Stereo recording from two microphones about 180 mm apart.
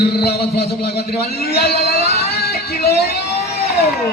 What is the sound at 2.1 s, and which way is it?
Music, 60° left (ahead or behind).